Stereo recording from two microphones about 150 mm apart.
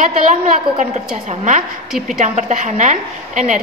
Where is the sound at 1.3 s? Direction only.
55° right (ahead or behind).